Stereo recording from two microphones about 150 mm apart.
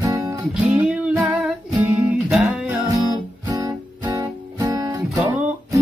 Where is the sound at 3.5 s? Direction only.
25° right (ahead or behind).